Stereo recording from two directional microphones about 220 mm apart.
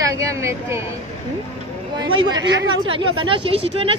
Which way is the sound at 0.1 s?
15° right (ahead or behind).